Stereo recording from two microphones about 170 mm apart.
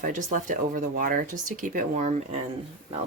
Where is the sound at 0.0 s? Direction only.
50° right (ahead or behind).